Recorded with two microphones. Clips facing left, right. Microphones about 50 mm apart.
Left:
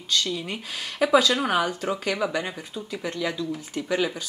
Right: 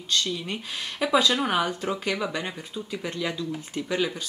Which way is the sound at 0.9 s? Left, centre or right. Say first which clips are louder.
Left 3 dB; centre.